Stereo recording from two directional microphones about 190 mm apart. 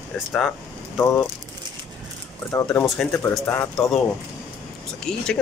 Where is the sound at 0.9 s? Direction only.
15° left (ahead or behind).